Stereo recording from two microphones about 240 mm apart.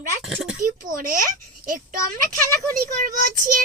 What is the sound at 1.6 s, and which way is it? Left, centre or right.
Speech, right.